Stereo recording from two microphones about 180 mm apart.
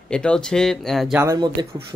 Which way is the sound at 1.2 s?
20° right (ahead or behind).